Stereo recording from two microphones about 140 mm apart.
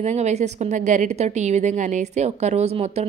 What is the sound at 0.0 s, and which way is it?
A woman's voice, 55° right (ahead or behind).